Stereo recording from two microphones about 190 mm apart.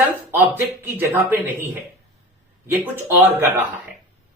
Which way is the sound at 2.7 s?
10° right (ahead or behind).